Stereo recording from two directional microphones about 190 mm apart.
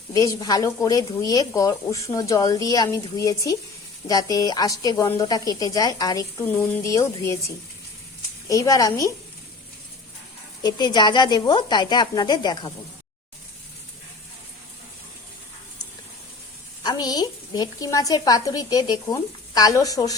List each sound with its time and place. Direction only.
0.1 s a woman's voice: 15° left (ahead or behind)
10.6 s a woman's voice: 20° left (ahead or behind)
16.8 s a woman's voice: 20° left (ahead or behind)